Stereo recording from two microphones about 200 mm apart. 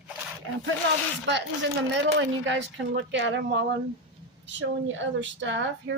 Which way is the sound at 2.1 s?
65° right (ahead or behind).